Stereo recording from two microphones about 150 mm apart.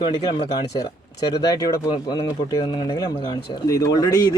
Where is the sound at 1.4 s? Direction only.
25° left (ahead or behind).